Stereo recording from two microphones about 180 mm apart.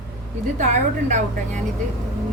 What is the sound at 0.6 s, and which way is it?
Speech, 40° right (ahead or behind).